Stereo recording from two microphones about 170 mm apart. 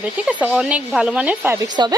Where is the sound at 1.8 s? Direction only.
25° right (ahead or behind).